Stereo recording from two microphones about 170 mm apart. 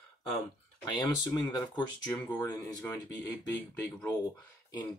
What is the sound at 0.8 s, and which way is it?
Speech, 20° left (ahead or behind).